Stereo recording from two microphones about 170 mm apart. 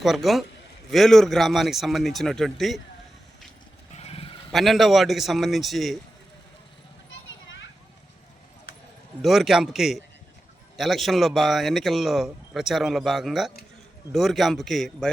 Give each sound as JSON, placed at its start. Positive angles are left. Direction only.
{"t": 0.0, "sound": "a man's voice", "side_deg": 0}
{"t": 3.9, "sound": "sheep", "side_deg": 35}
{"t": 4.5, "sound": "a man's voice", "side_deg": 0}
{"t": 9.2, "sound": "a man's voice", "side_deg": 0}